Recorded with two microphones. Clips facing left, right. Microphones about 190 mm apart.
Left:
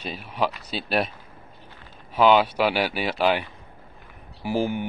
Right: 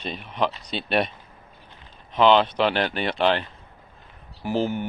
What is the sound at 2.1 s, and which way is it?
Speech, 5° left (ahead or behind).